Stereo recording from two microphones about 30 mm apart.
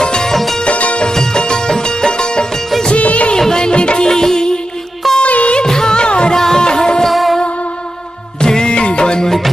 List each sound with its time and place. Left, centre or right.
0.0 s music: left
0.3 s music: centre
0.7 s music: left
1.1 s music: centre
3.0 s music of bollywood: left
3.3 s music: left
3.7 s music: left
4.1 s music: centre
5.2 s music: left
5.7 s music: centre
5.9 s music: left
6.3 s music: centre
7.1 s music: centre
8.4 s music: left